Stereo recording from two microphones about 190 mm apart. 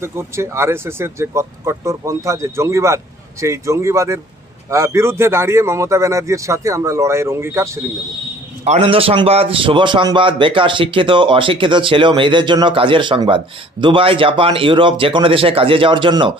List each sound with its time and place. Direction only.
0.0 s speech: 15° right (ahead or behind)
8.6 s a man's voice: 35° right (ahead or behind)